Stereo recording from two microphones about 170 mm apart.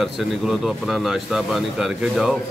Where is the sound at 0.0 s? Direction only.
Centre (ahead or behind).